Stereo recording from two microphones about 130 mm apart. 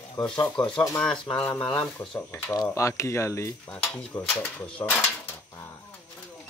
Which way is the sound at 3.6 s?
10° left (ahead or behind).